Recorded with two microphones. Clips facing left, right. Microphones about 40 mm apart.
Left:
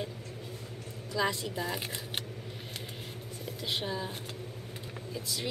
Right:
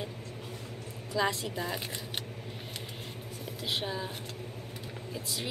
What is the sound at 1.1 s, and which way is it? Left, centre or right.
Speech, centre.